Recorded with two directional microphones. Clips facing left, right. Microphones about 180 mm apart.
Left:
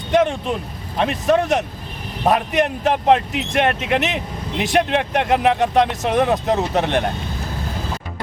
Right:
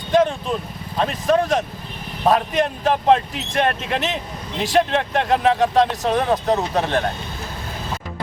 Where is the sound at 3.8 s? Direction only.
65° left (ahead or behind).